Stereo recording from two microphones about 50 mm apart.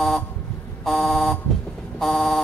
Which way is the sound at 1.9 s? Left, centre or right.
Centre.